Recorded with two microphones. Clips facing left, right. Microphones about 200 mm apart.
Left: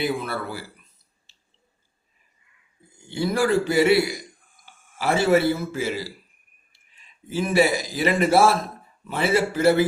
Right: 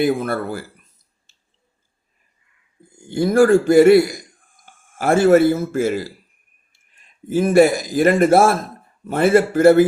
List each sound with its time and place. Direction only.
0.0 s a man's voice: 45° right (ahead or behind)
1.3 s squish: 45° right (ahead or behind)
2.9 s a man's voice: 50° right (ahead or behind)